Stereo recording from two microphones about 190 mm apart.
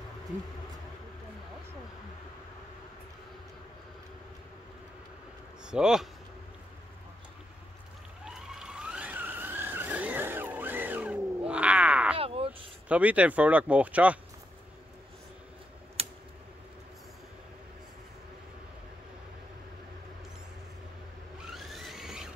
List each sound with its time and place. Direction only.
5.7 s speech: 5° right (ahead or behind)
8.3 s vehicle: 5° right (ahead or behind)
12.2 s a sound: 30° right (ahead or behind)
12.8 s speech: 5° right (ahead or behind)
16.0 s typing: 30° right (ahead or behind)
21.5 s a sound: centre (ahead or behind)